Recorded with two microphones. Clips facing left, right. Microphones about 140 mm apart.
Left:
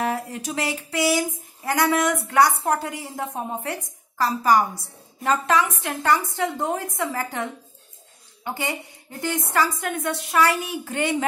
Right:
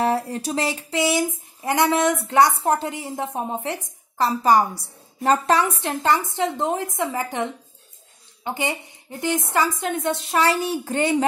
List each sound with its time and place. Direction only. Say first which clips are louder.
0.0 s a woman's voice: right 4 dB; 35° right (ahead or behind)